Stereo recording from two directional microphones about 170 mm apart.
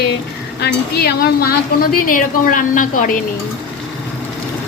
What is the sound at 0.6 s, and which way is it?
A woman's voice, 65° left (ahead or behind).